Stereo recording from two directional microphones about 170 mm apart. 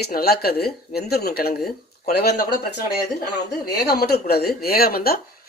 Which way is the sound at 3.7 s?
65° left (ahead or behind).